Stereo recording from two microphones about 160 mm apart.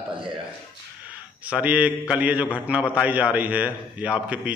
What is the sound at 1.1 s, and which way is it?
A man's voice, 10° right (ahead or behind).